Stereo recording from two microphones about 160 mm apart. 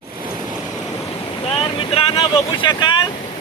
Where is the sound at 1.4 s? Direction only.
35° left (ahead or behind).